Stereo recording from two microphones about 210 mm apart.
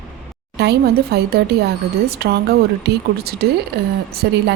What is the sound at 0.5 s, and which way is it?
A woman's voice, 50° right (ahead or behind).